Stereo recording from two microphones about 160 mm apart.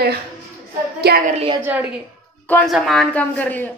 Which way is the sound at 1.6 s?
10° right (ahead or behind).